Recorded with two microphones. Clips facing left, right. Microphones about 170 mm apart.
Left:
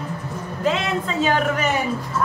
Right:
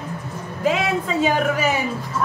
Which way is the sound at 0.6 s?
10° right (ahead or behind).